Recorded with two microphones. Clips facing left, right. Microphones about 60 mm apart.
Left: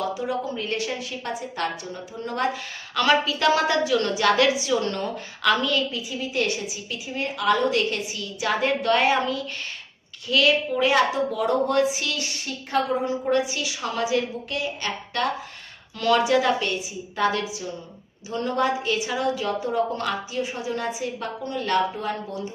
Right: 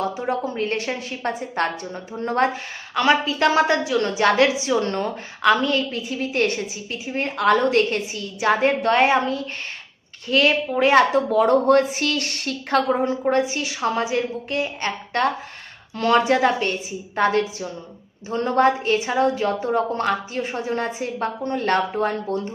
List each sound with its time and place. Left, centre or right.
0.0 s a woman's voice: right
2.9 s a woman's voice: right
5.9 s a woman's voice: right
13.2 s a woman's voice: right